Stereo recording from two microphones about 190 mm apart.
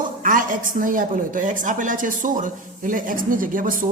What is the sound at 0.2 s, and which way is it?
A woman's voice, 45° right (ahead or behind).